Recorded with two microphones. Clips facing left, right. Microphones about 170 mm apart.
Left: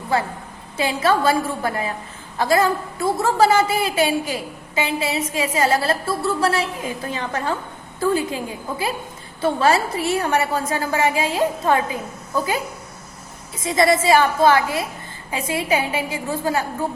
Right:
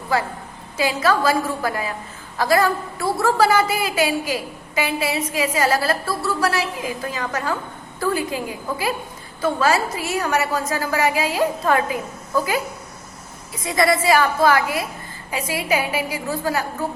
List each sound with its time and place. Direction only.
0.8 s a woman's voice: 25° left (ahead or behind)
9.4 s a woman's voice: 30° left (ahead or behind)
13.6 s a woman's voice: 25° left (ahead or behind)